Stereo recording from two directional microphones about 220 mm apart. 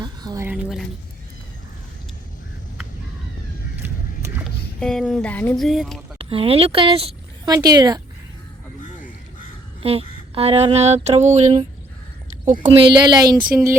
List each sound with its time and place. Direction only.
0.0 s speech: 20° right (ahead or behind); by 0.9 s centre (ahead or behind)
3.8 s vehicle: 10° right (ahead or behind)
4.8 s speech: centre (ahead or behind)
6.1 s speech: 25° right (ahead or behind)
9.8 s a sound: 25° right (ahead or behind)
12.6 s a sound: 20° right (ahead or behind)